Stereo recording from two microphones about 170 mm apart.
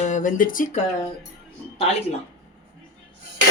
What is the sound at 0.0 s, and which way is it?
Speech, 50° left (ahead or behind).